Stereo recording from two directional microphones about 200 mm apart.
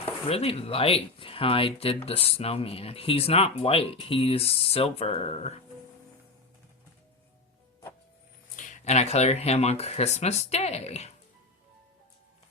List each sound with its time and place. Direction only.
0.3 s speech: 30° left (ahead or behind)
8.5 s speech: 35° left (ahead or behind)